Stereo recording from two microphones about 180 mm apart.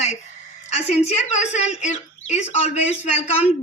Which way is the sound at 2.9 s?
40° left (ahead or behind).